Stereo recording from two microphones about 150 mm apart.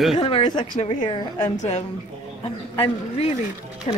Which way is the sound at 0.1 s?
35° left (ahead or behind).